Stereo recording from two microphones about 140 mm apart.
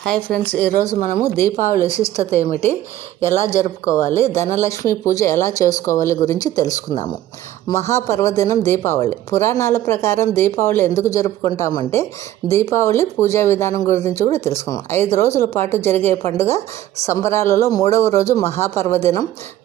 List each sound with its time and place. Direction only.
0.0 s speech: 5° left (ahead or behind)
0.9 s speech: 65° left (ahead or behind)
1.2 s speech: 20° left (ahead or behind)
4.1 s speech: 20° left (ahead or behind)